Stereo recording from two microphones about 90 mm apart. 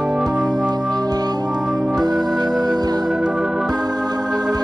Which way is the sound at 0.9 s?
45° right (ahead or behind).